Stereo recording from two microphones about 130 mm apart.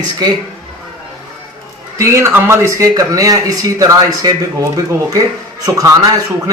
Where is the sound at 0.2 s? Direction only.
30° right (ahead or behind).